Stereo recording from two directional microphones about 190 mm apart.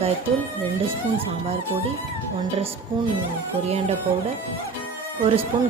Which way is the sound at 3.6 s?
35° right (ahead or behind).